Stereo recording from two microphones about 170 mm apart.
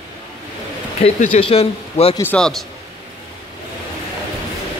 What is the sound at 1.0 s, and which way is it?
Speech, 35° left (ahead or behind).